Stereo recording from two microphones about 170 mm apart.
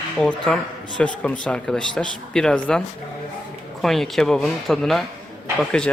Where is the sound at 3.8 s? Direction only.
Centre (ahead or behind).